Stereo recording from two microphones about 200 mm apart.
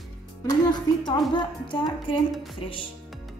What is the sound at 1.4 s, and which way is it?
Speech, 20° left (ahead or behind).